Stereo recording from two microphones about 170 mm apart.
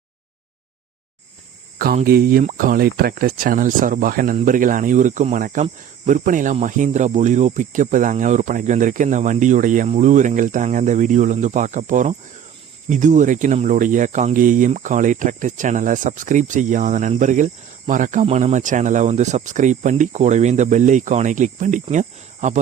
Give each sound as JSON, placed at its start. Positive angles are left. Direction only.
{"t": 2.0, "sound": "speech", "side_deg": -60}